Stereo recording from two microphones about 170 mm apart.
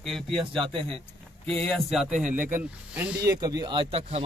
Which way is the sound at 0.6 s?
30° right (ahead or behind).